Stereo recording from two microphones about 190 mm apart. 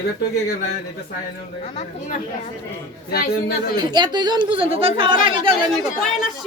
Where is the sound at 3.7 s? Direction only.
25° right (ahead or behind).